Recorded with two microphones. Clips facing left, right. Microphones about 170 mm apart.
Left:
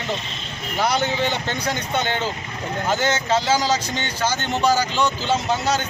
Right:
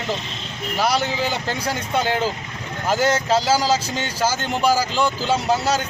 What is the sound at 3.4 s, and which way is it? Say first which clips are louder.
A man's voice: right 1 dB; 5° right (ahead or behind).